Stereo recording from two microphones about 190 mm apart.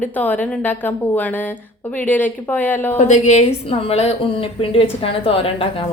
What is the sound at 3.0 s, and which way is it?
A woman's voice, 40° left (ahead or behind).